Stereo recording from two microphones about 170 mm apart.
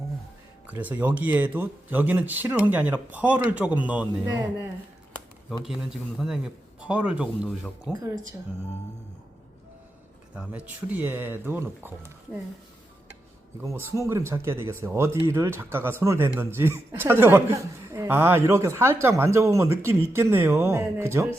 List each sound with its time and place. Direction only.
0.7 s speech: 10° right (ahead or behind)
5.6 s a man's voice: centre (ahead or behind)
10.3 s speech: 5° right (ahead or behind)
13.6 s speech: 15° right (ahead or behind)